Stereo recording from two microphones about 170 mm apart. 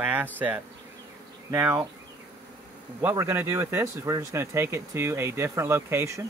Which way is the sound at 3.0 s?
15° right (ahead or behind).